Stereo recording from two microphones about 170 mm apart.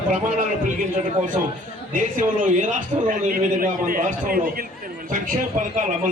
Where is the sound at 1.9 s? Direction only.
50° right (ahead or behind).